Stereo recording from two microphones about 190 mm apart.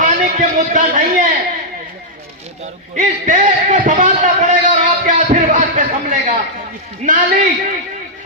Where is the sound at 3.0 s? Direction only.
40° right (ahead or behind).